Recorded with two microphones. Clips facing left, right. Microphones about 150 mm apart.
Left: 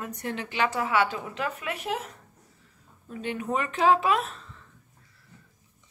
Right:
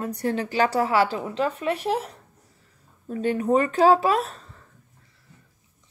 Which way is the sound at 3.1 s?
40° right (ahead or behind).